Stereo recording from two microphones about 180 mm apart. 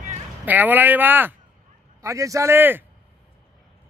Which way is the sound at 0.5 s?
10° right (ahead or behind).